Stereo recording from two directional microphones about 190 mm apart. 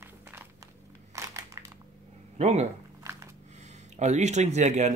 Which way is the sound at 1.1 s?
15° right (ahead or behind).